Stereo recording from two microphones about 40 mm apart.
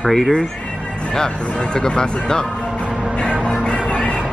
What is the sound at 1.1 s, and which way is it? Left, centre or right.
Speech, centre.